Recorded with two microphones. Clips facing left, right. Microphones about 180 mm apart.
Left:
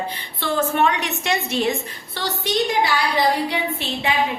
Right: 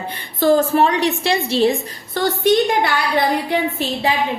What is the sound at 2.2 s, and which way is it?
Speech, 50° right (ahead or behind).